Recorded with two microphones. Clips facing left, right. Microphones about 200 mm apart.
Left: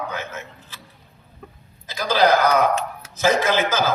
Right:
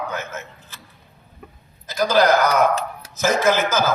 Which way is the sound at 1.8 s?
45° right (ahead or behind).